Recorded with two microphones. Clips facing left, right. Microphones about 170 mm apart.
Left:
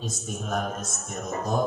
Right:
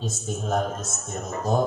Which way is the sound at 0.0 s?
25° right (ahead or behind).